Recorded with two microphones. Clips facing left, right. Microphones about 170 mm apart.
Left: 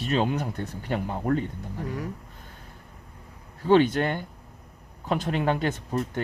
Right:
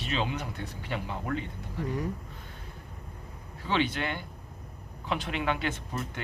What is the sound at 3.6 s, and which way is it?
Speech, 45° left (ahead or behind).